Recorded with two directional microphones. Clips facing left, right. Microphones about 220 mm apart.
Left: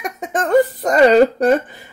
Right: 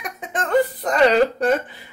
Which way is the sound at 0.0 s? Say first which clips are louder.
Left 6 dB; 45° left (ahead or behind).